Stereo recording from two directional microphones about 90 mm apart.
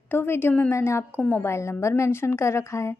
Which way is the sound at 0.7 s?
30° left (ahead or behind).